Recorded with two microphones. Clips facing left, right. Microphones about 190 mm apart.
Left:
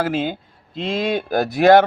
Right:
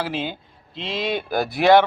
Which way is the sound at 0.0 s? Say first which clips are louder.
Left 5 dB; 45° left (ahead or behind).